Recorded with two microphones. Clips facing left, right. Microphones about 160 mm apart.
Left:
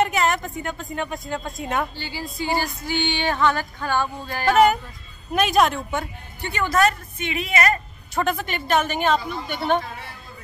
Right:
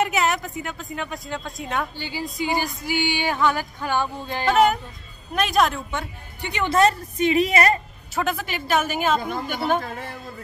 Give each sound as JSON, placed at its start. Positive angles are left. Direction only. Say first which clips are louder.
{"t": 0.0, "sound": "speech", "louder": "left 1 dB", "side_deg": -5}
{"t": 2.0, "sound": "speech", "louder": "right 2 dB", "side_deg": -15}
{"t": 4.5, "sound": "speech", "louder": "left 2 dB", "side_deg": 0}
{"t": 6.4, "sound": "speech", "louder": "even", "side_deg": -15}
{"t": 6.7, "sound": "a woman's voice", "louder": "right 2 dB", "side_deg": -30}
{"t": 8.1, "sound": "speech", "louder": "left 1 dB", "side_deg": -5}